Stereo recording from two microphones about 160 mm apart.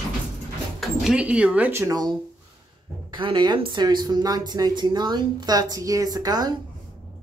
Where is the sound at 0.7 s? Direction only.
5° right (ahead or behind); by 2.1 s 20° right (ahead or behind).